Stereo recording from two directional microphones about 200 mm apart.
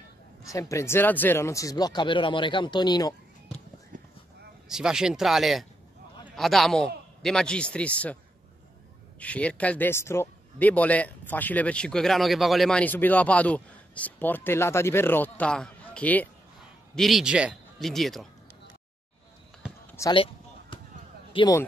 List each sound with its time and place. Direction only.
0.4 s speech: 15° left (ahead or behind)
3.9 s a sound: 40° right (ahead or behind)
4.6 s a man's voice: 5° right (ahead or behind)
9.2 s a man's voice: 5° left (ahead or behind)
20.0 s a man's voice: 15° left (ahead or behind)
20.7 s basketball bounce: 25° left (ahead or behind)
21.3 s speech: 25° left (ahead or behind)